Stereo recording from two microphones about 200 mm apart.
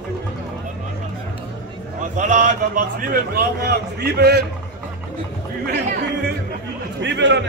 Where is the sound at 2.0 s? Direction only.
40° right (ahead or behind).